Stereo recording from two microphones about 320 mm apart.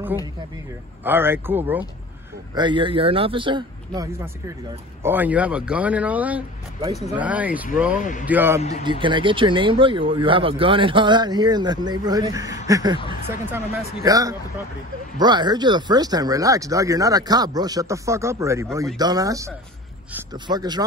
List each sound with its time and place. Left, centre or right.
1.0 s speech: centre
8.0 s speech: left
8.3 s speech: centre